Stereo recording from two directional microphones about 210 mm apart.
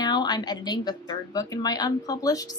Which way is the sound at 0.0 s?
20° left (ahead or behind).